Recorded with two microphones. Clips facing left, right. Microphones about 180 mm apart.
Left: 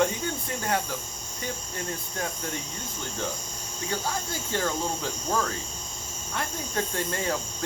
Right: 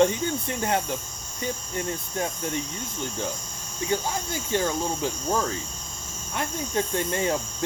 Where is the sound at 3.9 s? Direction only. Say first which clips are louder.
Right 3 dB; 15° right (ahead or behind).